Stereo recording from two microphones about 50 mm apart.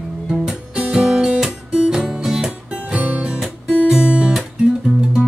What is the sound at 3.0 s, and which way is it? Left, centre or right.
Music, right.